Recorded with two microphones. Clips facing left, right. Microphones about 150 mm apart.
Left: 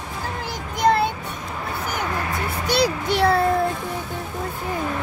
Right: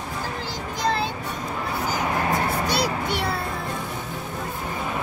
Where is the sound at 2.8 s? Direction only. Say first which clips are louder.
Left 5 dB; 90° left.